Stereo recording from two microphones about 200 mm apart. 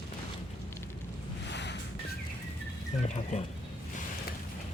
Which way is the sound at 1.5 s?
60° left (ahead or behind).